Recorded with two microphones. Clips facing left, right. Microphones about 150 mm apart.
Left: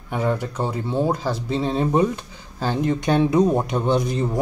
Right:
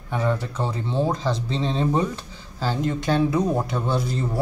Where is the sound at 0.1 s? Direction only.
15° left (ahead or behind).